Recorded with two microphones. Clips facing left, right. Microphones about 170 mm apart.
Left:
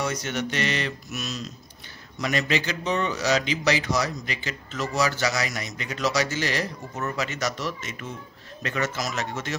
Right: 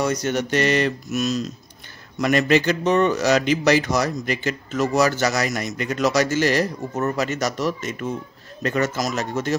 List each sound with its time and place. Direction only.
0.0 s a man's voice: 40° right (ahead or behind)